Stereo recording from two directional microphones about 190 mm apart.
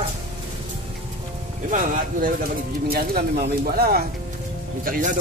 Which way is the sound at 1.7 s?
45° right (ahead or behind).